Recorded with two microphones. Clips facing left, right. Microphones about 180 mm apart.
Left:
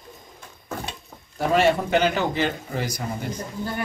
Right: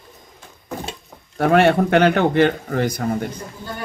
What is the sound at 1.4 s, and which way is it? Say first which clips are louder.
Speech: right 5 dB; 65° right (ahead or behind).